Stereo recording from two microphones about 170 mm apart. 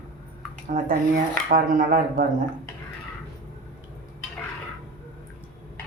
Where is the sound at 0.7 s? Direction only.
60° right (ahead or behind).